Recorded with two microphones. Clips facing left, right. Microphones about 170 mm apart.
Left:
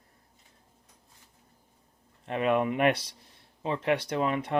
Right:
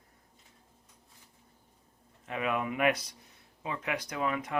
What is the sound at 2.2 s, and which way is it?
Speech, 35° left (ahead or behind).